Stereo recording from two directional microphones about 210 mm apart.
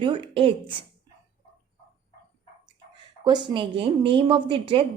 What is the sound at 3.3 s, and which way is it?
Speech, 20° right (ahead or behind).